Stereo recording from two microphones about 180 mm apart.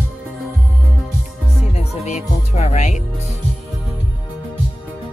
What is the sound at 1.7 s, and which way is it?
Music, 40° left (ahead or behind).